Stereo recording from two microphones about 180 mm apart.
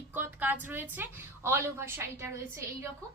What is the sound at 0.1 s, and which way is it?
A woman's voice, 10° right (ahead or behind).